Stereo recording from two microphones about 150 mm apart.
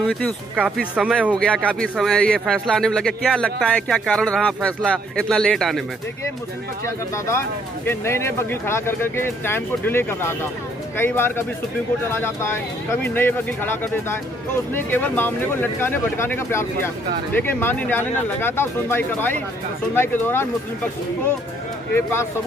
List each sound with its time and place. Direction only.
0.0 s a man's voice: centre (ahead or behind)
1.3 s a man's voice: 10° left (ahead or behind)
7.2 s speech: 15° left (ahead or behind)
21.9 s speech: 15° left (ahead or behind)